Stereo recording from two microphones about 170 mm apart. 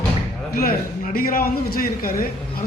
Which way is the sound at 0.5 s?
55° left (ahead or behind).